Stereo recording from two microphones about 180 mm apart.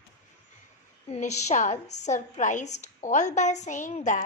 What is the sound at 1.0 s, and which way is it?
A woman's voice, 40° left (ahead or behind).